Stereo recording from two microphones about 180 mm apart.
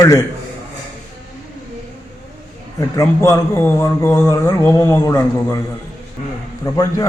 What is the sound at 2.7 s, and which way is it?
A man's voice, 15° left (ahead or behind).